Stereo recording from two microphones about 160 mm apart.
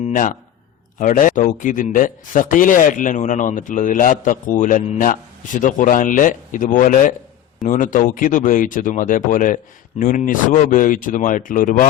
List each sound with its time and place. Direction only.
0.1 s a man's voice: 55° left (ahead or behind)